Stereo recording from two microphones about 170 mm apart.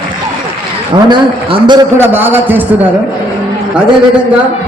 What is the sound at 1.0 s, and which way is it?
Speech, 30° right (ahead or behind).